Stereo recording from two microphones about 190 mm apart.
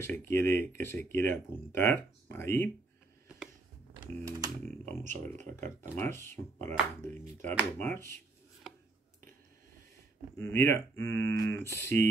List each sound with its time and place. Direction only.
0.0 s speech: 10° left (ahead or behind)
4.2 s typing: 15° right (ahead or behind)
5.6 s speech: 10° left (ahead or behind)
10.3 s speech: 15° left (ahead or behind)